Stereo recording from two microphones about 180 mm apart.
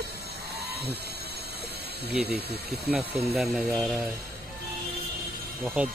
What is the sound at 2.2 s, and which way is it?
Speech, 65° right (ahead or behind).